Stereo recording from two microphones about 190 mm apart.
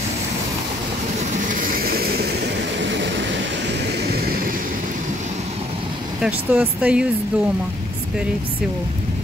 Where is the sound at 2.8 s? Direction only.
70° right (ahead or behind).